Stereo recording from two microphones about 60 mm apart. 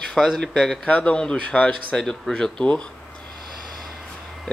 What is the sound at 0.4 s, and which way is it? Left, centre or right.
Speech, centre.